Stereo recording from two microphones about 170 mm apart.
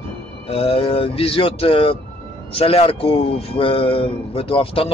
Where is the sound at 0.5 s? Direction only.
35° left (ahead or behind).